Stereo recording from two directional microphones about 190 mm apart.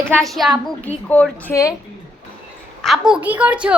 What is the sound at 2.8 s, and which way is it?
Speech, centre (ahead or behind).